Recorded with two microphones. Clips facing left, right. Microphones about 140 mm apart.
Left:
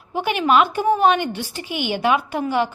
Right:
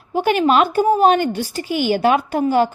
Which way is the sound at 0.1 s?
45° right (ahead or behind).